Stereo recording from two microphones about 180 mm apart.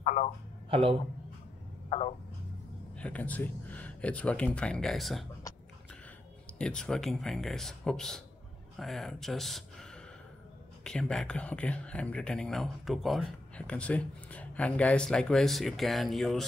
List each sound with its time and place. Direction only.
0.0 s speech: 40° left (ahead or behind)
0.7 s a man's voice: 30° right (ahead or behind)
1.9 s a sound: 30° left (ahead or behind)
3.0 s speech: 10° left (ahead or behind)
6.6 s speech: 5° left (ahead or behind)